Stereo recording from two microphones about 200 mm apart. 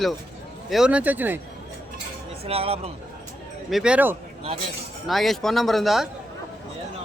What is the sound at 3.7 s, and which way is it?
A man's voice, 5° right (ahead or behind).